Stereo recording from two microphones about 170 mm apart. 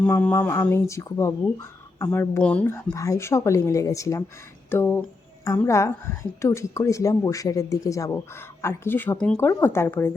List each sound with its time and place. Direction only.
0.0 s speech: 5° left (ahead or behind)